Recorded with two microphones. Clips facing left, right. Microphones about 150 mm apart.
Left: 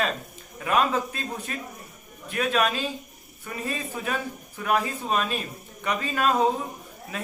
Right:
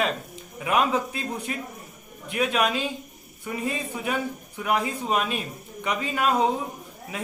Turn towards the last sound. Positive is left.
turn(degrees=-15)  # may be behind; listen again after turning